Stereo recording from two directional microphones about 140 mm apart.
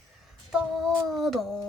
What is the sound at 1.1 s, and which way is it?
Speech, centre (ahead or behind).